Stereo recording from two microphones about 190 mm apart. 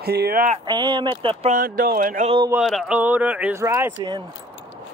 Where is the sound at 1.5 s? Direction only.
50° right (ahead or behind).